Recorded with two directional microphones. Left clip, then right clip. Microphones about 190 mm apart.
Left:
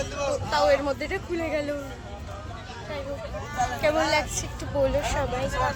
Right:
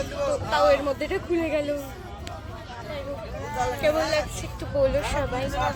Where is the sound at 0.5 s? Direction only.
10° left (ahead or behind).